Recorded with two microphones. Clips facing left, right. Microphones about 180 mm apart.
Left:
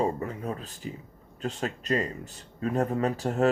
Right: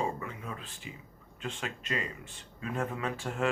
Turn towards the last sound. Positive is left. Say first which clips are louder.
# left 8 dB
turn(degrees=40)  # may be behind; listen again after turning